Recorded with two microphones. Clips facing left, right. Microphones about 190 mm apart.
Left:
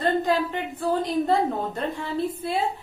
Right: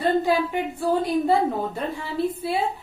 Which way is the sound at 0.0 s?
10° right (ahead or behind).